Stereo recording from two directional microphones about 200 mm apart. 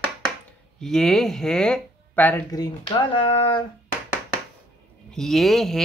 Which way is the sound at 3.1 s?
25° left (ahead or behind).